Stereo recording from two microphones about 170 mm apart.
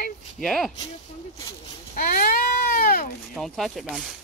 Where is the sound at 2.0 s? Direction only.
55° left (ahead or behind).